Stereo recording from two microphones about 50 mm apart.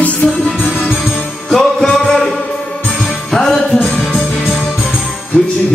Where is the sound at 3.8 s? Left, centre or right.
Left.